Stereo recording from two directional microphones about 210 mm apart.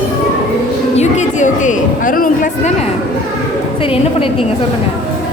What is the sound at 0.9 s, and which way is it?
Speech, 35° left (ahead or behind).